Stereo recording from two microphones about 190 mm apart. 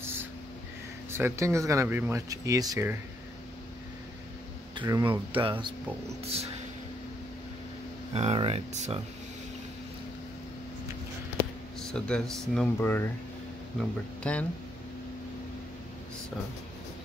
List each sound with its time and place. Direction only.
0.0 s a sound: 10° right (ahead or behind)
1.1 s speech: 15° right (ahead or behind)
4.7 s speech: 20° right (ahead or behind)
8.1 s speech: 35° right (ahead or behind)
11.9 s speech: 5° left (ahead or behind)